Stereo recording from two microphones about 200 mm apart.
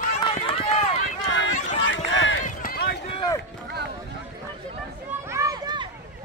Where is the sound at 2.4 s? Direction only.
50° left (ahead or behind).